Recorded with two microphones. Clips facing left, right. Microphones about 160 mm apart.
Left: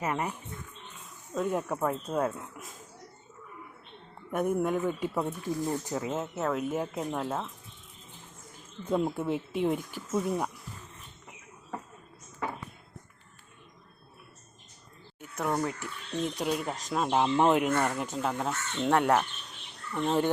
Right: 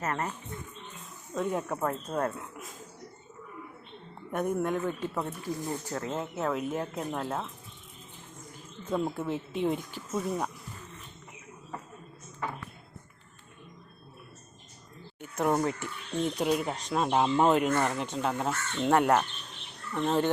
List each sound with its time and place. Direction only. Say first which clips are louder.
0.0 s speech: left 1 dB; 10° left (ahead or behind)
1.4 s speech: left 1 dB; centre (ahead or behind)
4.3 s speech: left 1 dB; 10° left (ahead or behind)
8.9 s speech: left 2 dB; 10° left (ahead or behind)
15.4 s speech: right 3 dB; 20° right (ahead or behind)
15.8 s speech: right 2 dB; centre (ahead or behind)